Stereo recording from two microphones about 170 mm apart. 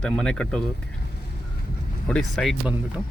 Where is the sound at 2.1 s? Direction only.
5° left (ahead or behind).